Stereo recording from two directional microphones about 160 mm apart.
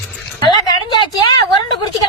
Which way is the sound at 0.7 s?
25° left (ahead or behind).